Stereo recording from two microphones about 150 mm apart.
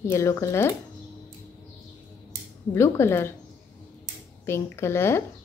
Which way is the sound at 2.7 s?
15° left (ahead or behind).